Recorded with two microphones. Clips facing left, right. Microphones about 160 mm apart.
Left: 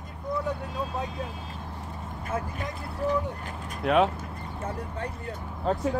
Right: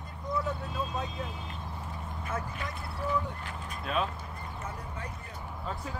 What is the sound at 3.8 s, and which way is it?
Speech, 70° left (ahead or behind).